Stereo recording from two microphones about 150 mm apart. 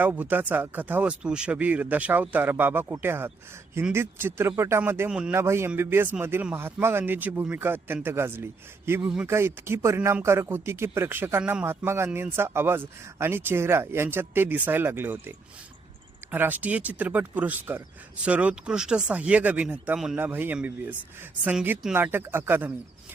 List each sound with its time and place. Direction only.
0.0 s speech: 10° right (ahead or behind)
16.3 s speech: 10° right (ahead or behind)